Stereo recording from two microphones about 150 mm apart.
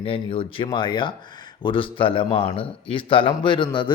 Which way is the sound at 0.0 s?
40° left (ahead or behind).